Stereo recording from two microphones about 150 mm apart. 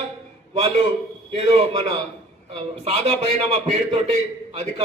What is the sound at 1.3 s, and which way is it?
A man's voice, 45° right (ahead or behind).